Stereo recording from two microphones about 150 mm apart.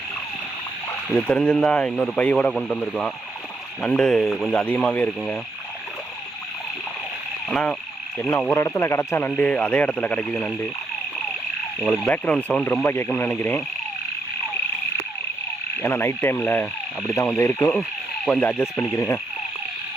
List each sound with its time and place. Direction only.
1.1 s speech: 5° left (ahead or behind)
7.5 s speech: 5° left (ahead or behind)
11.8 s speech: 5° left (ahead or behind)
15.8 s speech: 15° left (ahead or behind)